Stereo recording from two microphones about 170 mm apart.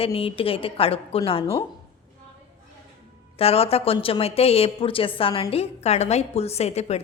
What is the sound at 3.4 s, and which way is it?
A woman's voice, 35° left (ahead or behind).